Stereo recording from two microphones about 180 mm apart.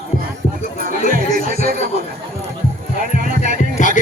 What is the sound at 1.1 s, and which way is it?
Music, 50° right (ahead or behind).